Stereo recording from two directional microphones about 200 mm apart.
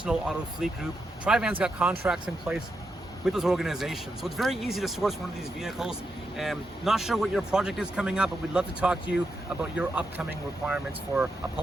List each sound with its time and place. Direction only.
0.0 s a man's voice: 5° right (ahead or behind)